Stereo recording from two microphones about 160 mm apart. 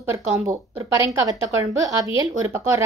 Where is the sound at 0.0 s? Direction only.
20° right (ahead or behind).